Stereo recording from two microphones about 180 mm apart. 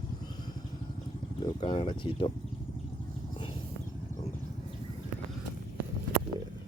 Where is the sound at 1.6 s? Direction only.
30° left (ahead or behind).